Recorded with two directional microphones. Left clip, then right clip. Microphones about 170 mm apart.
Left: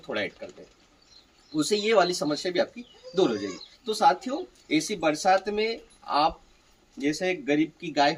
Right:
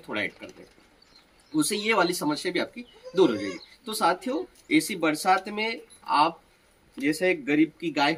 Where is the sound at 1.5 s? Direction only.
20° left (ahead or behind).